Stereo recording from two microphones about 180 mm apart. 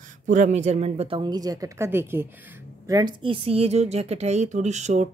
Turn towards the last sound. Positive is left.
turn(degrees=-40)  # may be behind; listen again after turning